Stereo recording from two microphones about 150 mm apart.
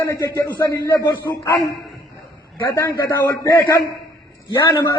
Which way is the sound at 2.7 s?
20° left (ahead or behind).